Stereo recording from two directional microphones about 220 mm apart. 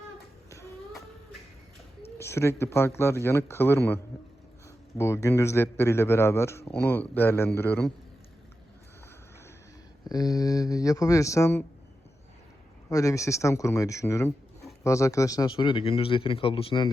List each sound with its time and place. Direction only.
2.1 s a man's voice: 10° left (ahead or behind)
10.1 s a man's voice: 15° left (ahead or behind)
12.9 s a man's voice: 15° left (ahead or behind)